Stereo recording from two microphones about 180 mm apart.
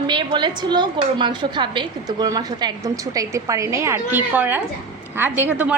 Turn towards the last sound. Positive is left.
turn(degrees=-10)  # may be behind; listen again after turning